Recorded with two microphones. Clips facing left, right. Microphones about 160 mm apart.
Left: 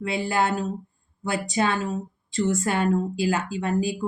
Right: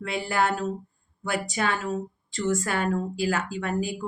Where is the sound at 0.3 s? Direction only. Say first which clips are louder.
Even; 25° left (ahead or behind).